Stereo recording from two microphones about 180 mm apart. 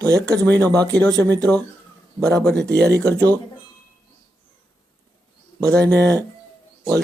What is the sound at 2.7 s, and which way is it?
Speech, 65° right (ahead or behind).